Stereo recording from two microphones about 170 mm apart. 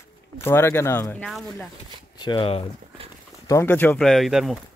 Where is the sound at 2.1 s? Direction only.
25° left (ahead or behind).